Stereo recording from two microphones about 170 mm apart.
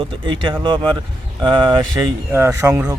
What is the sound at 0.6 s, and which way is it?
Speech, 30° right (ahead or behind).